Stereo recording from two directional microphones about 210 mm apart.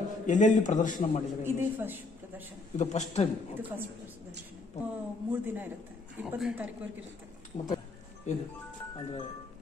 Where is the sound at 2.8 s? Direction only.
35° left (ahead or behind).